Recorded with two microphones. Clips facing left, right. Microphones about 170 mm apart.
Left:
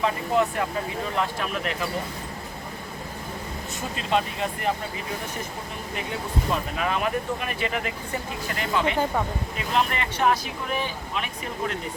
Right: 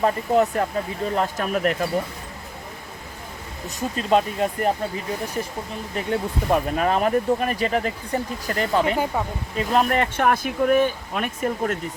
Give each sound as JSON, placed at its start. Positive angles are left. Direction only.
{"t": 0.0, "sound": "speech", "side_deg": -40}
{"t": 3.8, "sound": "speech", "side_deg": -40}
{"t": 6.5, "sound": "speech", "side_deg": -40}